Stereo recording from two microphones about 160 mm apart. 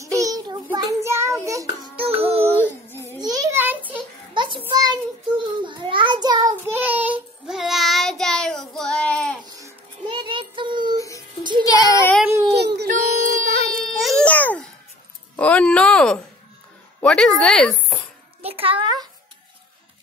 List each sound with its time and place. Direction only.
0.2 s child singing: 25° right (ahead or behind)
2.0 s child singing: 40° right (ahead or behind)
2.6 s a sound: 15° left (ahead or behind)
3.2 s a sound: 25° right (ahead or behind)
4.3 s child singing: 30° right (ahead or behind)
6.5 s child singing: 10° right (ahead or behind); by 9.4 s 5° left (ahead or behind)
9.4 s babbling: 25° right (ahead or behind)
10.0 s child singing: 30° right (ahead or behind)
11.6 s child singing: 20° left (ahead or behind)
12.4 s baby cry: 90° right; by 13.9 s 60° right (ahead or behind)
13.9 s music: centre (ahead or behind)
15.3 s a sound: 10° left (ahead or behind)
18.4 s a sound: 35° right (ahead or behind)